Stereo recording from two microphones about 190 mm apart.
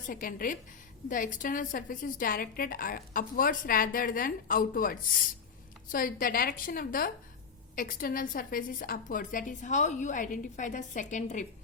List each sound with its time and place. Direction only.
0.1 s a woman's voice: 50° left (ahead or behind)